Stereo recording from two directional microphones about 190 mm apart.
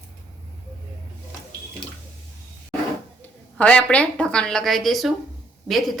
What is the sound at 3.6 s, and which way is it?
A woman's voice, 5° left (ahead or behind).